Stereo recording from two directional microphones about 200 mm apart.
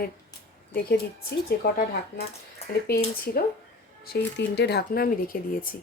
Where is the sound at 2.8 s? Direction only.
50° left (ahead or behind).